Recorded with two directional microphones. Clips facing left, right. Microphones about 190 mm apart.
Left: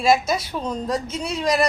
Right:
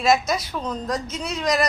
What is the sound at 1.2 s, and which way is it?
Music, 30° left (ahead or behind).